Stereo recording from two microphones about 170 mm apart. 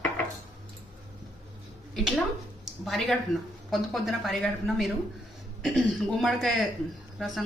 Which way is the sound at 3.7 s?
Centre (ahead or behind).